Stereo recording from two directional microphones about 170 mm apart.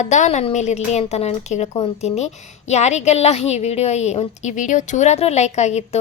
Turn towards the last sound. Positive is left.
turn(degrees=40)  # may be behind; listen again after turning